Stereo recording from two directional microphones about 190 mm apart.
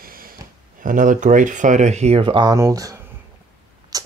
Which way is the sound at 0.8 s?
45° right (ahead or behind).